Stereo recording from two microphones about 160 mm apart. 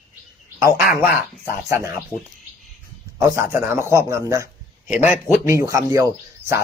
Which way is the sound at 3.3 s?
15° right (ahead or behind).